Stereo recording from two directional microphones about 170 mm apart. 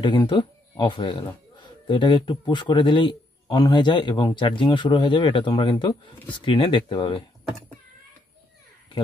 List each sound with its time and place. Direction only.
0.0 s speech: 25° left (ahead or behind)